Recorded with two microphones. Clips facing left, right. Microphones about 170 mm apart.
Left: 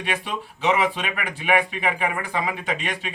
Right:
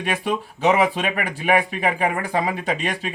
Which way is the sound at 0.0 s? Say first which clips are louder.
Right 5 dB; 45° right (ahead or behind).